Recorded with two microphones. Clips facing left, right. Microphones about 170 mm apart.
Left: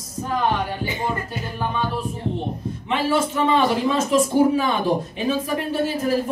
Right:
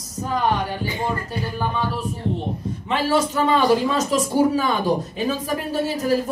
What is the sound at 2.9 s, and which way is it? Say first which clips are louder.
Music: right 1 dB; 35° right (ahead or behind).